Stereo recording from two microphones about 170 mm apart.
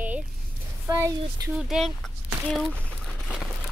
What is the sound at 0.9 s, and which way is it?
Speech, 20° right (ahead or behind).